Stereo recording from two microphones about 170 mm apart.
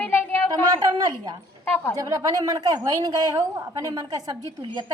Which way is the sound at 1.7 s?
10° left (ahead or behind).